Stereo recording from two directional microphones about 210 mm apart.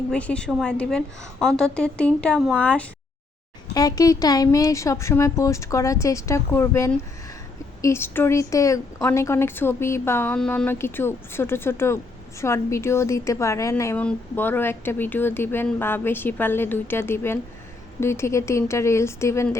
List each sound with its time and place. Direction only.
0.1 s a woman's voice: 5° left (ahead or behind)
3.8 s a woman's voice: 15° left (ahead or behind)